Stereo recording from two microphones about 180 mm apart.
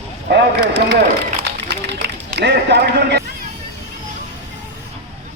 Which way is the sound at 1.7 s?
70° right (ahead or behind).